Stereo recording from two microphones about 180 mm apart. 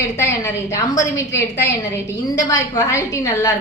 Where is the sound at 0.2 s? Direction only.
15° left (ahead or behind).